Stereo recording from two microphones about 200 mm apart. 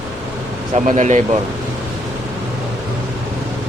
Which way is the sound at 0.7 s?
35° right (ahead or behind).